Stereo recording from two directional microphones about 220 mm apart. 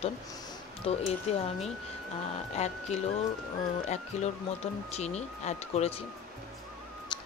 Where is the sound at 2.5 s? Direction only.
30° left (ahead or behind).